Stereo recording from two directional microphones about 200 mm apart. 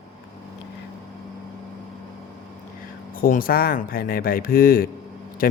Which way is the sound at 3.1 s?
45° left (ahead or behind).